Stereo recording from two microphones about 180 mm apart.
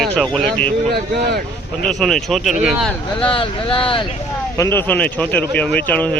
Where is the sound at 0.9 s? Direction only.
60° right (ahead or behind).